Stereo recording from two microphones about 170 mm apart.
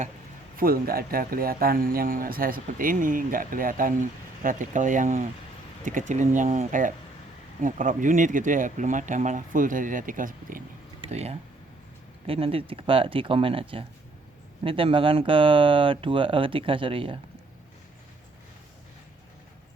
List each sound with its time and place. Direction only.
0.5 s speech: 60° right (ahead or behind)
11.0 s speech: 35° right (ahead or behind)